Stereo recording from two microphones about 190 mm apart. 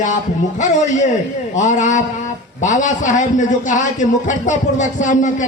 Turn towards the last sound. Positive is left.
turn(degrees=40)  # may be behind; listen again after turning